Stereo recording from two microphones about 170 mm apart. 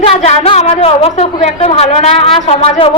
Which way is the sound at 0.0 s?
40° left (ahead or behind).